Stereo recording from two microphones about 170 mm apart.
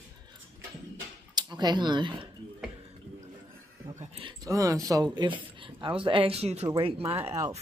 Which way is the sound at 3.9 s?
40° right (ahead or behind).